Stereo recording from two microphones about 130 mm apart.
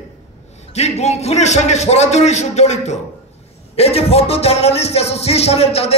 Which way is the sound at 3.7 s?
50° left (ahead or behind).